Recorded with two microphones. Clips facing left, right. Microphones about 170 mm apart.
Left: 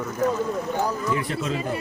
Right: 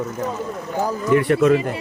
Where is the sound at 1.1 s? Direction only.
65° right (ahead or behind).